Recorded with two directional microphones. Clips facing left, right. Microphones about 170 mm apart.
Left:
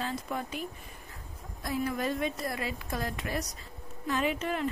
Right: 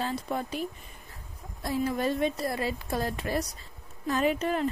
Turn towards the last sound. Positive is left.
turn(degrees=-40)  # may be behind; listen again after turning